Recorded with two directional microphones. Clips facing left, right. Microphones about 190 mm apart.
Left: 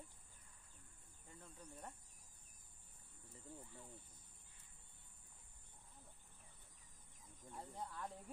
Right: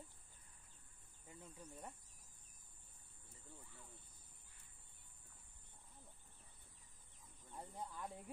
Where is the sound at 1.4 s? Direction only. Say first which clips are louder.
Right 1 dB; 10° right (ahead or behind).